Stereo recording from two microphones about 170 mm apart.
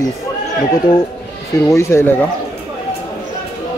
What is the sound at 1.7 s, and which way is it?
Speech, 15° left (ahead or behind).